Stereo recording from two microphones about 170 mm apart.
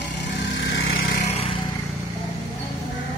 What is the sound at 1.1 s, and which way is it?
Vehicle, 40° left (ahead or behind).